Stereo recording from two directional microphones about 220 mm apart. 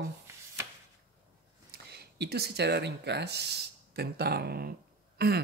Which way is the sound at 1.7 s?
45° right (ahead or behind).